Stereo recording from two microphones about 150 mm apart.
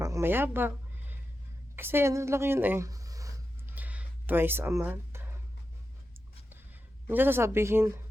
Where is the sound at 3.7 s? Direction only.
10° right (ahead or behind).